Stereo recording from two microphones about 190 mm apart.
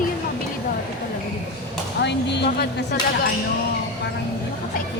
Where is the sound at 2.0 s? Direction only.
65° left (ahead or behind).